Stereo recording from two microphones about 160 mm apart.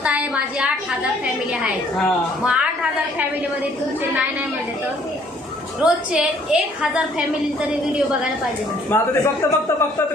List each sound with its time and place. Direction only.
0.0 s a sound: 10° right (ahead or behind)
2.4 s a woman's voice: 5° right (ahead or behind)
5.8 s a woman's voice: 5° right (ahead or behind)
8.9 s a man's voice: 15° left (ahead or behind)